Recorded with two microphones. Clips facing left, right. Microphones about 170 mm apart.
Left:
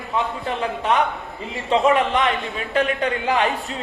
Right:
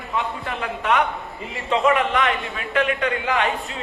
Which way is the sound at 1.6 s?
35° left (ahead or behind).